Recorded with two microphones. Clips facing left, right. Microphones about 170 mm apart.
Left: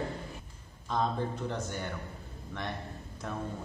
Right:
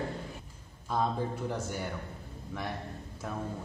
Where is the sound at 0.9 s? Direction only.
10° right (ahead or behind).